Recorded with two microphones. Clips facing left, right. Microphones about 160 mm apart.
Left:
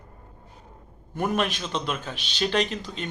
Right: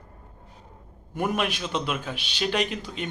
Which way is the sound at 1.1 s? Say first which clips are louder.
Left 1 dB; 10° right (ahead or behind).